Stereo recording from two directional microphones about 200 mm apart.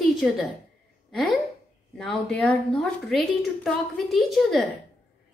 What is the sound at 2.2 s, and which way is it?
A woman's voice, 5° left (ahead or behind).